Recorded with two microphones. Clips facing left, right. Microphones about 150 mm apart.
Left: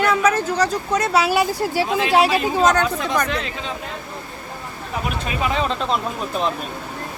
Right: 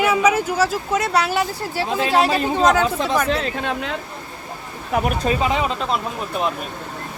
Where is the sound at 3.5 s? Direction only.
70° right (ahead or behind).